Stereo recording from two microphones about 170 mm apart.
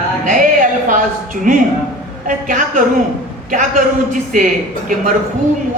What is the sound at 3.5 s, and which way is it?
Speech, 50° right (ahead or behind).